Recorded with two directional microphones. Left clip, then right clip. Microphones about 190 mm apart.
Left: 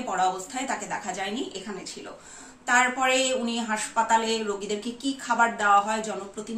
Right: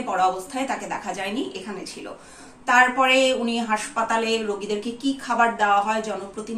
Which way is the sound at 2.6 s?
25° left (ahead or behind).